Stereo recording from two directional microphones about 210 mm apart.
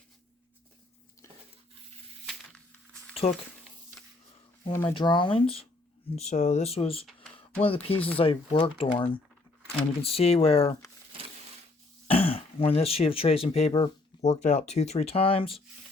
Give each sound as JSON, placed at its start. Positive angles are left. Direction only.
{"t": 2.2, "sound": "a sound", "side_deg": 0}
{"t": 3.2, "sound": "speech", "side_deg": 35}
{"t": 4.7, "sound": "speech", "side_deg": 10}
{"t": 4.9, "sound": "speech", "side_deg": 25}
{"t": 12.0, "sound": "speech", "side_deg": 25}